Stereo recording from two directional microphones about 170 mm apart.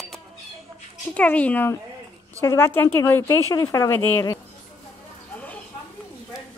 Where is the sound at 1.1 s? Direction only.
5° left (ahead or behind).